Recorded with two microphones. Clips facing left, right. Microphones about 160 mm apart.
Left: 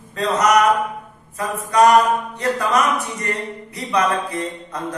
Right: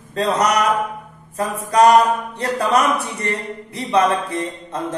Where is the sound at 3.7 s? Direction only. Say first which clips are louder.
Right 3 dB; 25° right (ahead or behind).